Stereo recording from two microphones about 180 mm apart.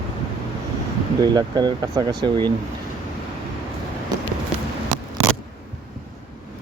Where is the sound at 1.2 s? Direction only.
25° right (ahead or behind).